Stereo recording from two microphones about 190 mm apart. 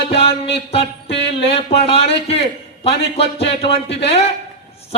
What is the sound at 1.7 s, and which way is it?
A man's voice, 30° left (ahead or behind).